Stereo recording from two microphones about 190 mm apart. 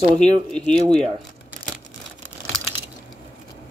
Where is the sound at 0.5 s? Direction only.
5° left (ahead or behind).